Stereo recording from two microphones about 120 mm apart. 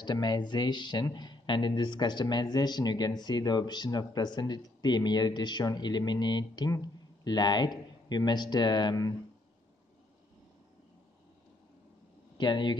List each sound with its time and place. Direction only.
0.0 s speech: 40° left (ahead or behind)
12.4 s speech: 40° left (ahead or behind)